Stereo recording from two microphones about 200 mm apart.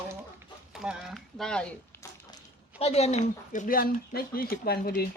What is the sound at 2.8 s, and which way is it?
Speech, 30° left (ahead or behind).